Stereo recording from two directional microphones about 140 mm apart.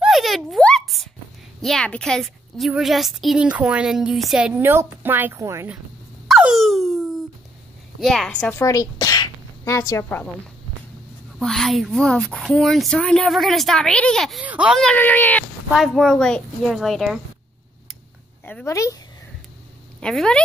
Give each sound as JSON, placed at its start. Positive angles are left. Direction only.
{"t": 0.0, "sound": "a sound", "side_deg": 0}
{"t": 1.6, "sound": "a woman's voice", "side_deg": 5}
{"t": 6.2, "sound": "a sound", "side_deg": 0}
{"t": 8.0, "sound": "a woman's voice", "side_deg": 0}
{"t": 8.5, "sound": "a woman's voice", "side_deg": 20}
{"t": 9.0, "sound": "sneeze", "side_deg": 25}
{"t": 11.3, "sound": "a woman's voice", "side_deg": 0}
{"t": 14.4, "sound": "speech", "side_deg": -10}
{"t": 14.8, "sound": "speech", "side_deg": 10}
{"t": 15.7, "sound": "a woman's voice", "side_deg": 0}
{"t": 18.4, "sound": "speech", "side_deg": 15}
{"t": 20.0, "sound": "a woman's voice", "side_deg": 5}